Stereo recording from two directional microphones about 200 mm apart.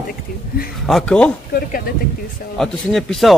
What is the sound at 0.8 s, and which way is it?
Speech, 5° left (ahead or behind).